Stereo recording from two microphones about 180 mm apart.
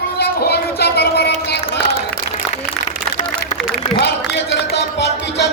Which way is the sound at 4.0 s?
70° left (ahead or behind).